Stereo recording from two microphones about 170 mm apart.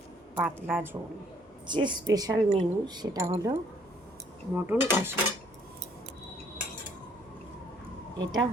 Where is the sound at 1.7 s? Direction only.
25° right (ahead or behind).